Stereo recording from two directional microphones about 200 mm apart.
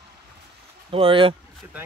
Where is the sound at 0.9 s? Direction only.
25° right (ahead or behind).